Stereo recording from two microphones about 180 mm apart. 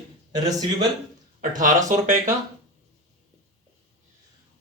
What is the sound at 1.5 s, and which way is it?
Speech, 45° right (ahead or behind).